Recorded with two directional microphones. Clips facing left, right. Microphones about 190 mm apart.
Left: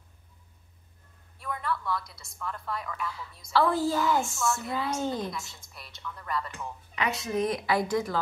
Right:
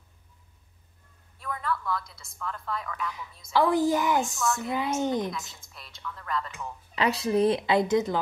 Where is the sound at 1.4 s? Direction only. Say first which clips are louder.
Right 1 dB; centre (ahead or behind).